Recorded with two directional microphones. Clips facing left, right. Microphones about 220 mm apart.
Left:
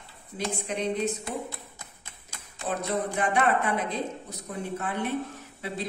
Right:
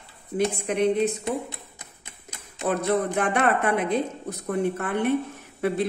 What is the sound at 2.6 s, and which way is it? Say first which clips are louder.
Speech: right 6 dB; 60° right (ahead or behind).